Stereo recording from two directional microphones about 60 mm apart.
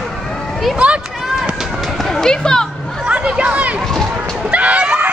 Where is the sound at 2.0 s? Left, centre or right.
Centre.